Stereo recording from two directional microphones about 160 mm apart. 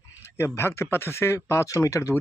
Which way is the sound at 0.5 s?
15° left (ahead or behind).